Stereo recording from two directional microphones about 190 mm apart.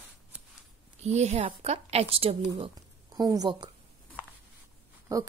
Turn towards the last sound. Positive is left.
turn(degrees=-15)  # may be behind; listen again after turning